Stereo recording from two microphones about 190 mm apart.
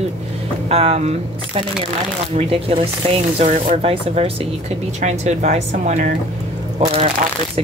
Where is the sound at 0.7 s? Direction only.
30° right (ahead or behind).